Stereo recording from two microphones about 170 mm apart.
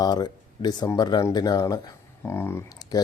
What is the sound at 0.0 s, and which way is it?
Speech, 25° left (ahead or behind).